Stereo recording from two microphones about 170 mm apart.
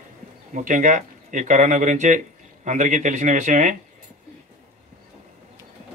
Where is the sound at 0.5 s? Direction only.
50° right (ahead or behind).